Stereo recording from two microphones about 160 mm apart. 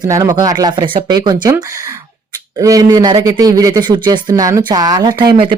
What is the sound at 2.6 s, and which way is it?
Speech, 20° right (ahead or behind).